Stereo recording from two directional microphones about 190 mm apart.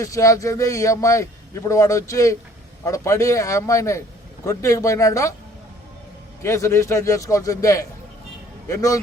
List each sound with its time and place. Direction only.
0.0 s a man's voice: 15° left (ahead or behind)
6.4 s a man's voice: 15° left (ahead or behind)